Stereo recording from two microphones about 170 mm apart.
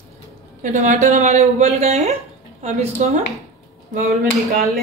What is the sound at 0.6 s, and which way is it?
Speech, 45° right (ahead or behind).